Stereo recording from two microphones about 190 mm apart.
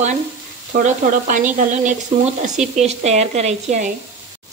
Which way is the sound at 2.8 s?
35° right (ahead or behind).